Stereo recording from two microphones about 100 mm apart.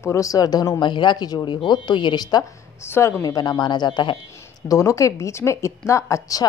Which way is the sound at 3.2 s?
40° left (ahead or behind).